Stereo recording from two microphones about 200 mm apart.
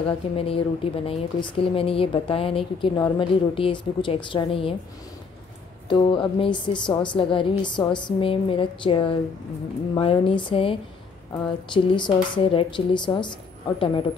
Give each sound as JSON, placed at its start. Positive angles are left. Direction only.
{"t": 0.4, "sound": "a woman's voice", "side_deg": 30}
{"t": 5.9, "sound": "a woman's voice", "side_deg": 25}